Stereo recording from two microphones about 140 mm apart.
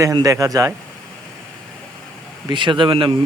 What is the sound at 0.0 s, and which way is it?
Speech, 25° right (ahead or behind).